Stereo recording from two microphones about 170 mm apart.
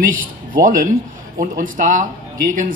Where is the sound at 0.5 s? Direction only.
55° right (ahead or behind).